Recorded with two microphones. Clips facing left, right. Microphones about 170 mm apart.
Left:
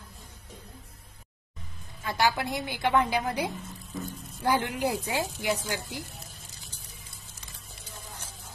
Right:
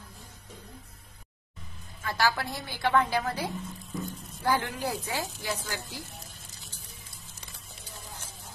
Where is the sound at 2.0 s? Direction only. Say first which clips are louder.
Left 2 dB; 20° left (ahead or behind).